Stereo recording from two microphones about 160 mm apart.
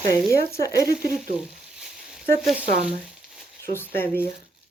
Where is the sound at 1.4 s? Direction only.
5° right (ahead or behind).